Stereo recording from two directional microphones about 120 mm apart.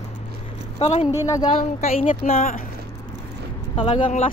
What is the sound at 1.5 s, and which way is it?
A woman's voice, 75° left (ahead or behind).